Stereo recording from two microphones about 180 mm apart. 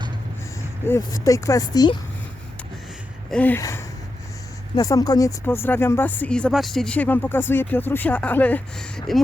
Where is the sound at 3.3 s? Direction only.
10° left (ahead or behind).